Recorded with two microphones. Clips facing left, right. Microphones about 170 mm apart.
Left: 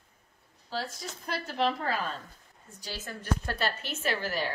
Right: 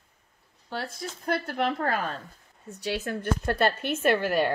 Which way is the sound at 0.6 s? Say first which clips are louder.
Right 2 dB; 60° right (ahead or behind).